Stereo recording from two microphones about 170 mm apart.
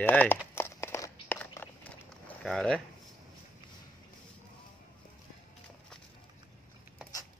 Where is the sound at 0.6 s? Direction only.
15° left (ahead or behind).